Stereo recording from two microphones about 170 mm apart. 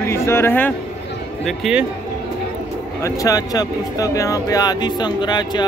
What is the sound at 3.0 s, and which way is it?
A man's voice, 20° left (ahead or behind).